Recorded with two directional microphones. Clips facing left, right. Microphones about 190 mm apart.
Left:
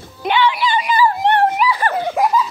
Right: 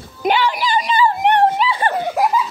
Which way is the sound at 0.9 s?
20° right (ahead or behind).